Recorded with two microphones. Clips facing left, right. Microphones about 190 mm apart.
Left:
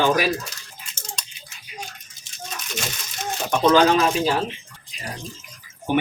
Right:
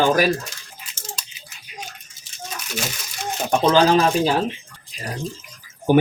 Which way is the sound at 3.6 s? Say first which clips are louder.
Even; 30° right (ahead or behind).